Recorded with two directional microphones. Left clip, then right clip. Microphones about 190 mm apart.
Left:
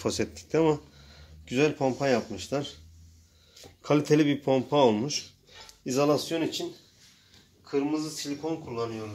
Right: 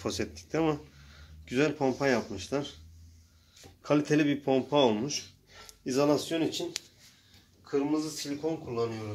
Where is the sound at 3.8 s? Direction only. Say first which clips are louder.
Left 3 dB; 35° left (ahead or behind); by 6.6 s 15° left (ahead or behind).